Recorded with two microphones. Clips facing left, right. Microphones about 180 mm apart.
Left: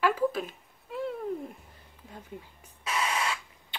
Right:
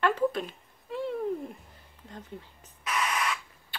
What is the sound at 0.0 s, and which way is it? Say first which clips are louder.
Speech: even; 5° left (ahead or behind).